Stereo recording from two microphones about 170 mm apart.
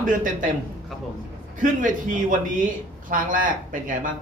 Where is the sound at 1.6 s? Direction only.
50° right (ahead or behind).